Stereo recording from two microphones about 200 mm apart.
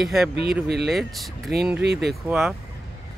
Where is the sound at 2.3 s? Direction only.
Centre (ahead or behind).